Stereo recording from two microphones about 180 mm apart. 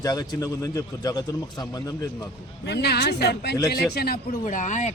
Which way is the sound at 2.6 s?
65° left (ahead or behind).